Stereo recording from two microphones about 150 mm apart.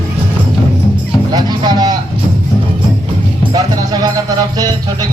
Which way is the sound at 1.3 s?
30° right (ahead or behind).